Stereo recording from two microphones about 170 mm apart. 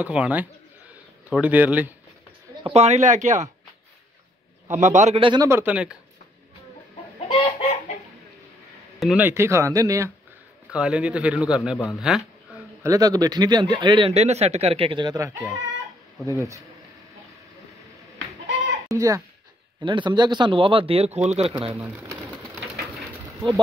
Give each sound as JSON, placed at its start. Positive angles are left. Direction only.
{"t": 0.0, "sound": "speech", "side_deg": -5}
{"t": 2.6, "sound": "speech", "side_deg": -40}
{"t": 4.6, "sound": "speech", "side_deg": -45}
{"t": 5.2, "sound": "speech", "side_deg": -25}
{"t": 5.5, "sound": "speech", "side_deg": -10}
{"t": 7.2, "sound": "chicken", "side_deg": 35}
{"t": 9.0, "sound": "speech", "side_deg": -10}
{"t": 10.7, "sound": "a man's voice", "side_deg": -5}
{"t": 12.8, "sound": "speech", "side_deg": -20}
{"t": 18.9, "sound": "speech", "side_deg": -20}
{"t": 21.7, "sound": "speech", "side_deg": -10}